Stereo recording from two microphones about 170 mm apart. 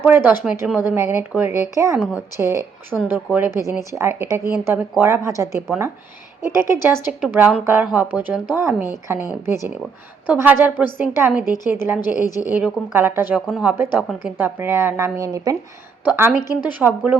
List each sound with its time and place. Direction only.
0.0 s speech: 10° right (ahead or behind)
2.9 s a woman's voice: 5° left (ahead or behind)
3.2 s speech: 10° right (ahead or behind)
14.1 s a woman's voice: centre (ahead or behind)
14.3 s speech: 10° right (ahead or behind)